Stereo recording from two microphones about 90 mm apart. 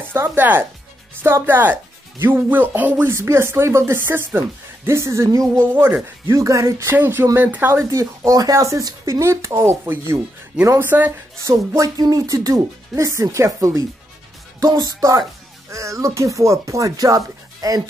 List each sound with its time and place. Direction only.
0.1 s speech: 25° right (ahead or behind)
7.7 s speech: 35° right (ahead or behind)
11.4 s speech: 35° right (ahead or behind)